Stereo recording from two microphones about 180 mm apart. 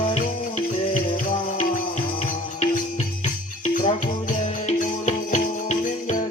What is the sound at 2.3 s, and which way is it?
Music, 45° left (ahead or behind).